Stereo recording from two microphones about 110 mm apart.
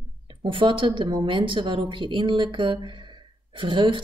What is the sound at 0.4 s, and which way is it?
Speech, 50° right (ahead or behind).